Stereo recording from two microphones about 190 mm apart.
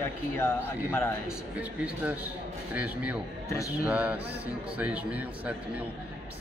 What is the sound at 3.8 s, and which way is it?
Speech, 10° right (ahead or behind).